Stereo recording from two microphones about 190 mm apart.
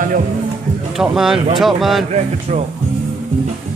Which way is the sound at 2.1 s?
35° right (ahead or behind).